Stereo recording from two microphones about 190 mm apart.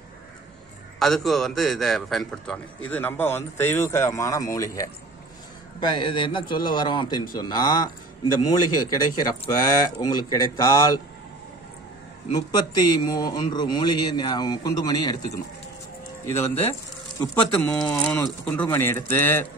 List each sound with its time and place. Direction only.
0.9 s a man's voice: centre (ahead or behind); by 4.8 s 15° left (ahead or behind)
5.9 s a man's voice: 25° left (ahead or behind)
12.4 s a man's voice: 20° left (ahead or behind)
17.6 s a man's voice: 5° left (ahead or behind)